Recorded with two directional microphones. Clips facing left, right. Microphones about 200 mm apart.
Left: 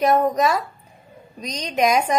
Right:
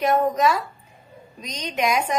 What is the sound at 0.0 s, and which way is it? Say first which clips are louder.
A woman's voice: left 2 dB; 40° left (ahead or behind).